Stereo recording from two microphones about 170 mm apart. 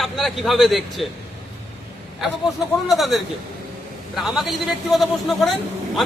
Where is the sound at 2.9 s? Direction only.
Centre (ahead or behind).